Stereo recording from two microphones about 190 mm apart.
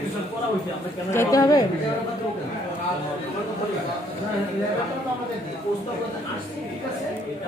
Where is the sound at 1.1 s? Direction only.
15° left (ahead or behind).